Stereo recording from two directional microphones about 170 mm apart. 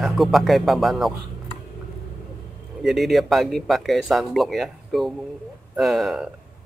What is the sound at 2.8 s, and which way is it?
Speech, centre (ahead or behind).